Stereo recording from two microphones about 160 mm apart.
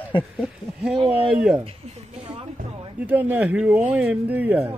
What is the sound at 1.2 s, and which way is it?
Speech, 5° right (ahead or behind).